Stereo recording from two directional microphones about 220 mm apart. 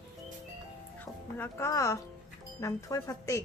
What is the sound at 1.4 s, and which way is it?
A woman's voice, 10° left (ahead or behind).